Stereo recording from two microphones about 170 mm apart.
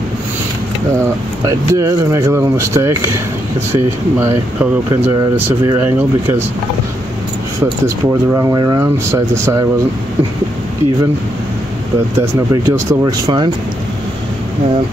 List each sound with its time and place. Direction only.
1.4 s speech: 20° right (ahead or behind)
5.7 s speech: 10° right (ahead or behind)
7.8 s speech: 15° right (ahead or behind)
12.2 s speech: 20° right (ahead or behind)